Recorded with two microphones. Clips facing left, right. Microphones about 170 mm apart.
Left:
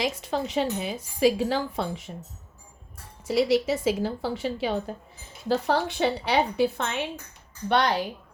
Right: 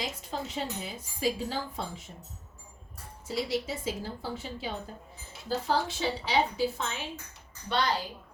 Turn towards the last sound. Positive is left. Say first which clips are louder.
# left 6 dB
turn(degrees=65)  # may be behind; listen again after turning